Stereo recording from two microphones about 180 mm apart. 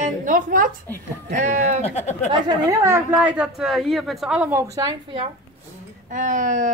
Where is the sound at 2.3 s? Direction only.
15° right (ahead or behind).